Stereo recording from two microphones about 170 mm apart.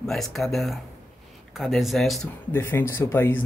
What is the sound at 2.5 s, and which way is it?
Speech, 15° left (ahead or behind).